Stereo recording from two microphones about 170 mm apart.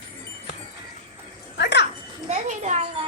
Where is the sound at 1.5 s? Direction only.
90° left.